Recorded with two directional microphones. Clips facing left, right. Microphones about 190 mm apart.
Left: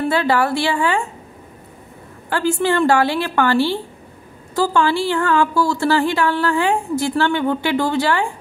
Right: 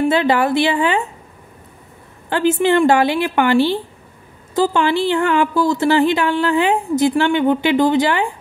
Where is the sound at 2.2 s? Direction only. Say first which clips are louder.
Right 3 dB; 20° right (ahead or behind).